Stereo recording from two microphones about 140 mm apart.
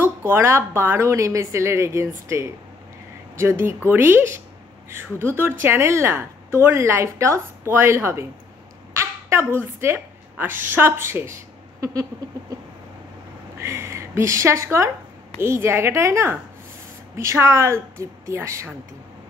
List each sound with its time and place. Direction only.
0.0 s a woman's voice: 15° right (ahead or behind)
11.8 s a sound: 25° right (ahead or behind)
13.6 s a woman's voice: 20° right (ahead or behind)